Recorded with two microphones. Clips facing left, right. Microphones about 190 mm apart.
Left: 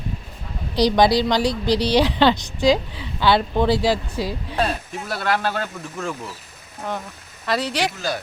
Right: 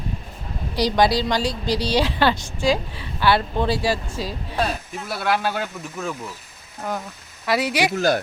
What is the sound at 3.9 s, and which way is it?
Speech, 15° left (ahead or behind).